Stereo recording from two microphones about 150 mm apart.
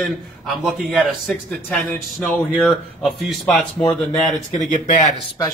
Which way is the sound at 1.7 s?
10° left (ahead or behind).